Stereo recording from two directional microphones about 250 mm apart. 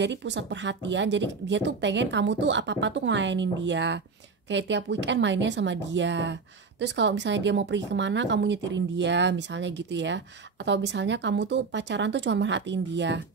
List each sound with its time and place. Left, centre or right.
0.0 s speech: right